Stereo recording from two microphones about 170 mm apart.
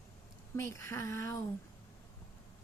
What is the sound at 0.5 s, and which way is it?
Speech, 15° left (ahead or behind).